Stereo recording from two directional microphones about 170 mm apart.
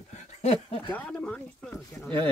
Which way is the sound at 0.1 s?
40° left (ahead or behind).